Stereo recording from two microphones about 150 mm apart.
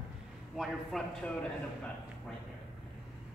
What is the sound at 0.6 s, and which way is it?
Speech, centre (ahead or behind).